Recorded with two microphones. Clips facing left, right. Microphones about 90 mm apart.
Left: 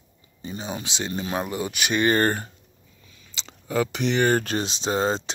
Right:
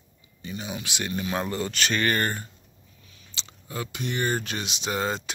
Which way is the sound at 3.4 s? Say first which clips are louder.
Left 10 dB; 90° left.